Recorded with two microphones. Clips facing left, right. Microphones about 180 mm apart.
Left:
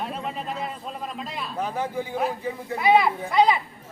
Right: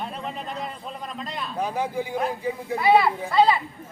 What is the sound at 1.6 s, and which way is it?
Speech, 15° right (ahead or behind).